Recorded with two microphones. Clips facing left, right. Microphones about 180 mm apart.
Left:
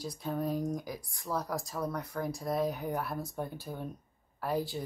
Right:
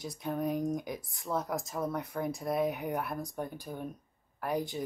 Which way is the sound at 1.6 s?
20° right (ahead or behind).